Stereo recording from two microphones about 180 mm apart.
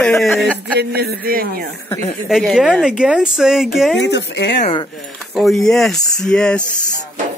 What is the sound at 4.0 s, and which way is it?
Speech, 70° left (ahead or behind).